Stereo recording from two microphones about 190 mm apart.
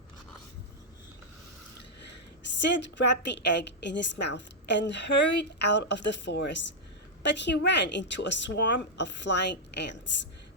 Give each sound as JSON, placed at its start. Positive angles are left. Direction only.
{"t": 2.6, "sound": "a woman's voice", "side_deg": 65}